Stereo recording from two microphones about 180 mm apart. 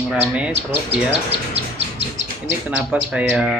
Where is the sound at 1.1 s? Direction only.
35° right (ahead or behind).